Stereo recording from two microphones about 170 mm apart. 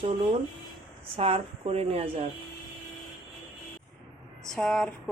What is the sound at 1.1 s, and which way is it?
A woman's voice, 35° right (ahead or behind).